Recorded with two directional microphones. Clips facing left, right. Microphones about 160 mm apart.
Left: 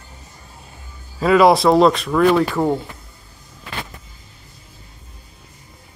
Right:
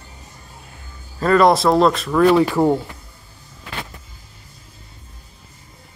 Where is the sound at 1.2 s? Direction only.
5° left (ahead or behind).